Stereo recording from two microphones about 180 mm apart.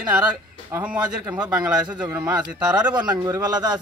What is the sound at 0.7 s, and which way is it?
Speech, 10° right (ahead or behind).